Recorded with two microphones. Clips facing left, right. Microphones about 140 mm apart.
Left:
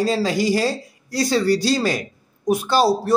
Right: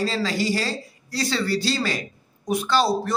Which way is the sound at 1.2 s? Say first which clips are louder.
Left 6 dB; 45° left (ahead or behind).